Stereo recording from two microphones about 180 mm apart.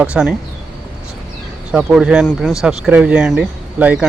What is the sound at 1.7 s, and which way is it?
Speech, 5° right (ahead or behind).